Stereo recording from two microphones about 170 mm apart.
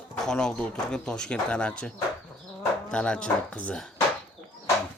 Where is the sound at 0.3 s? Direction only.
5° left (ahead or behind).